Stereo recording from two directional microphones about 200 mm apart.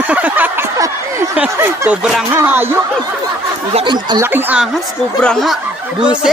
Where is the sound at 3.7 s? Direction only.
30° right (ahead or behind).